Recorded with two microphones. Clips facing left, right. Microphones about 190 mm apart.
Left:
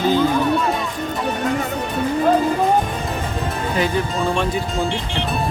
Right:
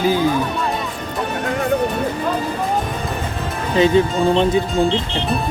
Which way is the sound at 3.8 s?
20° right (ahead or behind).